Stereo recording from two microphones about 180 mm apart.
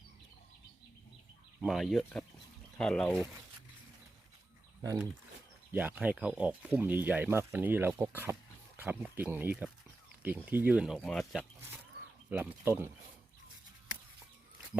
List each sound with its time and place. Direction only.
1.6 s speech: centre (ahead or behind)
4.8 s speech: 20° right (ahead or behind)